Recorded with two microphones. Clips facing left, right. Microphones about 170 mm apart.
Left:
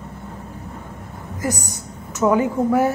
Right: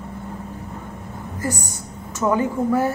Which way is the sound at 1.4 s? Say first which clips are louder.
Left 2 dB; 15° left (ahead or behind).